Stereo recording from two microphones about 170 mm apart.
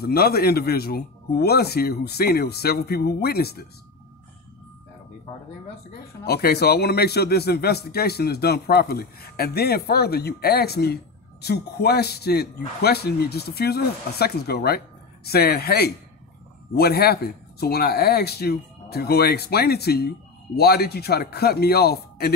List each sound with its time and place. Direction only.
0.0 s speech: 65° left (ahead or behind)
6.2 s speech: 65° left (ahead or behind)